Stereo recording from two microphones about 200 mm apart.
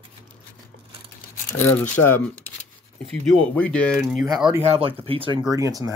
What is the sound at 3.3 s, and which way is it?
Speech, 5° left (ahead or behind).